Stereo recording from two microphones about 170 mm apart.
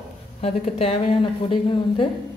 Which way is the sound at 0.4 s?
35° left (ahead or behind).